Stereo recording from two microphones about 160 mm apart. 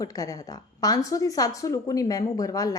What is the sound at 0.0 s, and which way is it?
A woman's voice, 20° left (ahead or behind).